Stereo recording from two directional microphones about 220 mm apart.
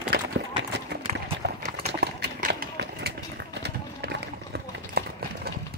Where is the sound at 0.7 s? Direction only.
50° right (ahead or behind).